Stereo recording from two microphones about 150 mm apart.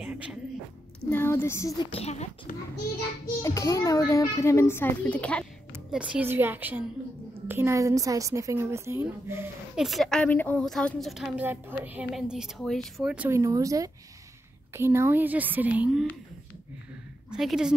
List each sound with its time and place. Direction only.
0.0 s a sound: 5° right (ahead or behind)
1.1 s a child's voice: 15° left (ahead or behind)
1.9 s speech: 45° left (ahead or behind)
3.4 s a child's voice: 20° left (ahead or behind)
5.9 s a woman's voice: 5° right (ahead or behind)
9.8 s a woman's voice: centre (ahead or behind)
13.3 s a woman's voice: 20° right (ahead or behind); by 16.1 s 5° right (ahead or behind)
17.3 s a woman's voice: 5° right (ahead or behind)